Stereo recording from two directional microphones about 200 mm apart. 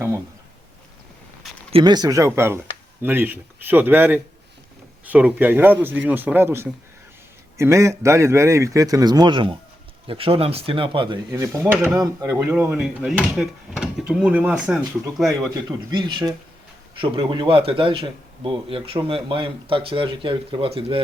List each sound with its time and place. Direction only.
1.7 s speech: 20° right (ahead or behind); by 15.3 s 5° right (ahead or behind)
15.9 s speech: 20° right (ahead or behind)